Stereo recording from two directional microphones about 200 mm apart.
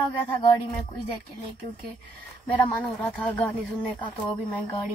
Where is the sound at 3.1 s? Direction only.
5° left (ahead or behind).